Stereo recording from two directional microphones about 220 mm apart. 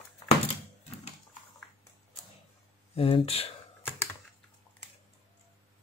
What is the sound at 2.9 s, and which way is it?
Speech, 25° left (ahead or behind).